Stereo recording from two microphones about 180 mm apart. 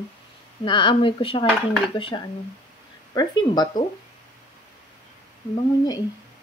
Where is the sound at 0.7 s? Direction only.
25° left (ahead or behind).